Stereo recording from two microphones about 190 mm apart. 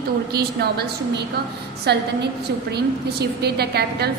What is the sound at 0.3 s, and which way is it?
A woman's voice, 55° right (ahead or behind).